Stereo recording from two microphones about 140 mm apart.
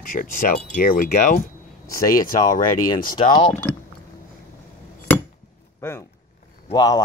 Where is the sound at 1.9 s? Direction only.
90° left.